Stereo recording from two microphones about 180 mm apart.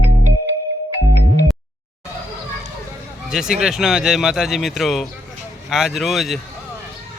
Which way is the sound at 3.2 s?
5° right (ahead or behind).